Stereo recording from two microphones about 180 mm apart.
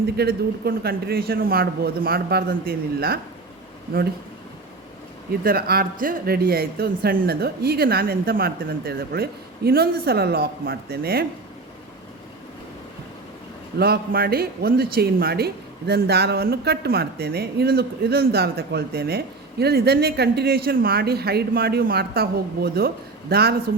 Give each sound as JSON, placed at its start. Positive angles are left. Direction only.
{"t": 0.2, "sound": "speech", "side_deg": -60}
{"t": 5.4, "sound": "speech", "side_deg": -60}
{"t": 13.7, "sound": "speech", "side_deg": -60}